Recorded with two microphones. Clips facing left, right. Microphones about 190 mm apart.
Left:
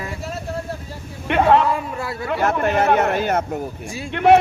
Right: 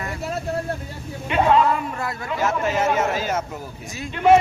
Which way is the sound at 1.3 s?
65° left (ahead or behind).